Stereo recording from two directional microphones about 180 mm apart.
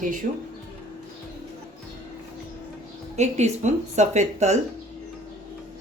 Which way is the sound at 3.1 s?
40° right (ahead or behind).